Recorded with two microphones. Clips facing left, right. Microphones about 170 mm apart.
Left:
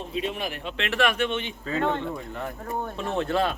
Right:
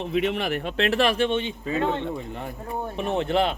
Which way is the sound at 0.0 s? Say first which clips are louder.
Right 5 dB; 75° right (ahead or behind).